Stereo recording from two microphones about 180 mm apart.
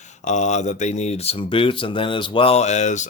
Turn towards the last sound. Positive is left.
turn(degrees=40)  # may be behind; listen again after turning